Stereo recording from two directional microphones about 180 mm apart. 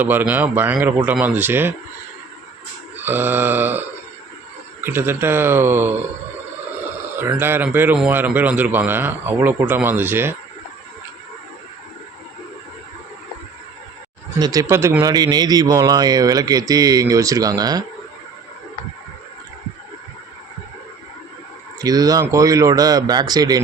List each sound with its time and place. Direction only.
0.0 s a man's voice: 10° right (ahead or behind)
3.0 s a man's voice: 10° right (ahead or behind)
7.2 s a man's voice: 10° right (ahead or behind)
14.3 s speech: 20° right (ahead or behind)
21.8 s speech: 20° right (ahead or behind)